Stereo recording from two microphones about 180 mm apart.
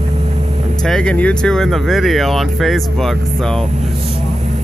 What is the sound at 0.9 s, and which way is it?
Speech, 5° left (ahead or behind).